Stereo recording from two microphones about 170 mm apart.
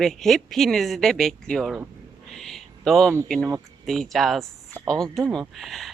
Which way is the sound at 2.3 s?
Centre (ahead or behind).